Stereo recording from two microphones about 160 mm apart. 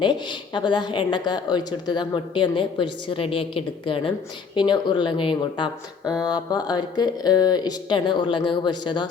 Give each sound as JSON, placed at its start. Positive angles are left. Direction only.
{"t": 0.0, "sound": "speech", "side_deg": 30}